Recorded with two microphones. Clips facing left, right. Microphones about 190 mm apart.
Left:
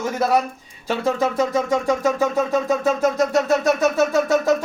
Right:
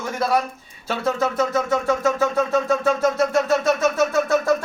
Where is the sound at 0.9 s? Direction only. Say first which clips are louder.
Left 2 dB; 15° left (ahead or behind).